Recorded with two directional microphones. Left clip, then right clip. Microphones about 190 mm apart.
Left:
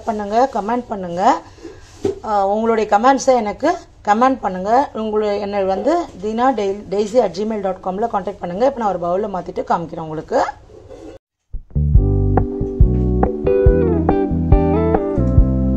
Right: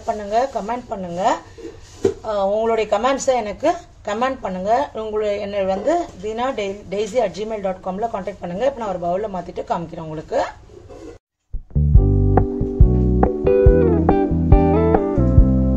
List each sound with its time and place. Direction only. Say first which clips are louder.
0.0 s a woman's voice: left 3 dB; 35° left (ahead or behind)
11.7 s music: even; centre (ahead or behind)